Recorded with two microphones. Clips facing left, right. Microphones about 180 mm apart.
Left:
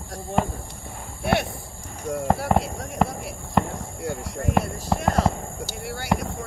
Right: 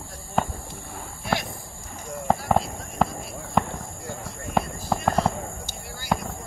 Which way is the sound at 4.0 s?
80° left.